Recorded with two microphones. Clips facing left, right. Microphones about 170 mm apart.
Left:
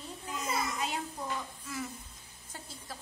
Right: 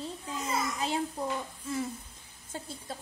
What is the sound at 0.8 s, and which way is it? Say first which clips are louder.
Speech: right 5 dB; 30° right (ahead or behind).